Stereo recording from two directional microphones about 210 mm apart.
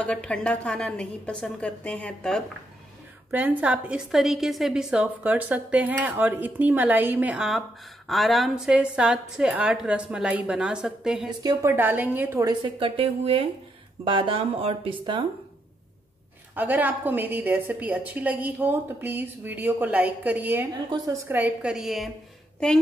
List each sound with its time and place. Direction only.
0.0 s a woman's voice: 5° left (ahead or behind)
3.3 s a woman's voice: 10° right (ahead or behind); by 15.2 s 25° right (ahead or behind)
16.5 s a woman's voice: 10° right (ahead or behind)